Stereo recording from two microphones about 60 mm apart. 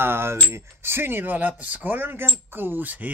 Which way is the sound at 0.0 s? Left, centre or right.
Right.